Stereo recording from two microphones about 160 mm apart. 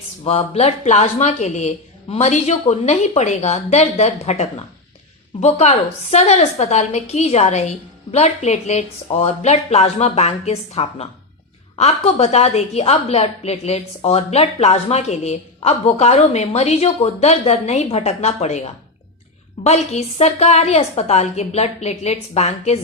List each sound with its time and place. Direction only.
0.3 s a woman's voice: 40° left (ahead or behind)